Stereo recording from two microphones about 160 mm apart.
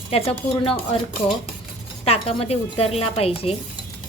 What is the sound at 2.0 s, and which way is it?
A woman's voice, 40° left (ahead or behind).